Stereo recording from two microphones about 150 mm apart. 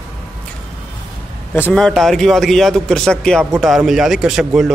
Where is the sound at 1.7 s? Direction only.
5° left (ahead or behind).